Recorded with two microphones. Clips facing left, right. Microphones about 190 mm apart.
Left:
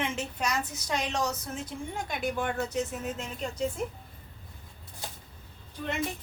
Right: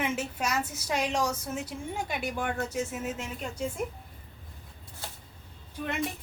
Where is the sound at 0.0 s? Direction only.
5° right (ahead or behind).